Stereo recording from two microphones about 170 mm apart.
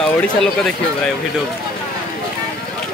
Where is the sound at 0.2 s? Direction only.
5° left (ahead or behind).